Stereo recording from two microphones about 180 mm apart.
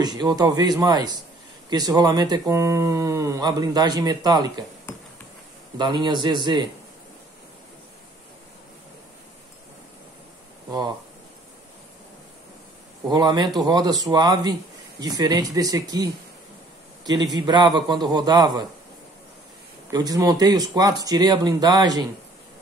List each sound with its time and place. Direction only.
0.0 s speech: 20° right (ahead or behind)
5.8 s speech: 25° right (ahead or behind)
13.1 s speech: 25° right (ahead or behind)
19.9 s speech: 20° right (ahead or behind)